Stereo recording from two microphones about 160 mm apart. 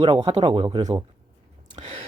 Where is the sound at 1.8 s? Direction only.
45° right (ahead or behind).